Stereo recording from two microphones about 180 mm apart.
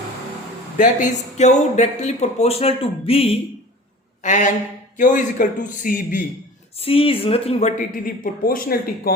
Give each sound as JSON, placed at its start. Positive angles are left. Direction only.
{"t": 0.8, "sound": "speech", "side_deg": 45}
{"t": 4.2, "sound": "a man's voice", "side_deg": 45}
{"t": 6.7, "sound": "speech", "side_deg": 30}